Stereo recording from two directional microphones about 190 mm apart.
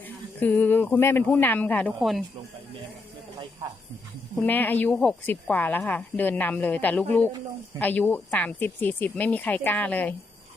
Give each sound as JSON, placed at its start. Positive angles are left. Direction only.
{"t": 0.3, "sound": "speech", "side_deg": 10}
{"t": 3.6, "sound": "speech", "side_deg": -15}
{"t": 4.4, "sound": "speech", "side_deg": 10}